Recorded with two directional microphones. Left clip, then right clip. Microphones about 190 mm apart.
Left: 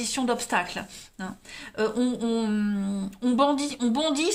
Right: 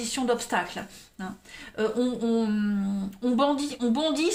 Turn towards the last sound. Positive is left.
turn(degrees=20)  # may be behind; listen again after turning